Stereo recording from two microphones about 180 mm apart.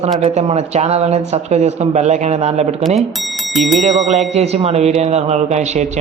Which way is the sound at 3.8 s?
40° right (ahead or behind).